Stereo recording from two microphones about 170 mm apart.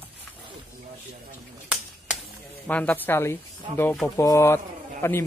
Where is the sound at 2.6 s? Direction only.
10° left (ahead or behind).